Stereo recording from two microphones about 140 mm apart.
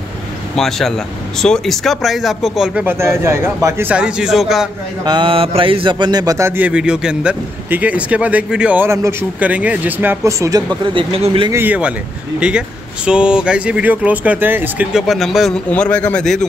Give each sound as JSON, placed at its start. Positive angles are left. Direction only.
{"t": 0.6, "sound": "speech", "side_deg": 0}
{"t": 2.8, "sound": "speech", "side_deg": -15}
{"t": 3.9, "sound": "speech", "side_deg": -5}
{"t": 5.0, "sound": "speech", "side_deg": -35}
{"t": 11.5, "sound": "speech", "side_deg": -10}
{"t": 15.0, "sound": "speech", "side_deg": 0}